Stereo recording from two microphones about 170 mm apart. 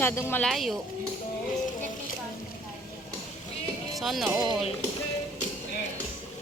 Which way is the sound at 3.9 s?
Centre (ahead or behind).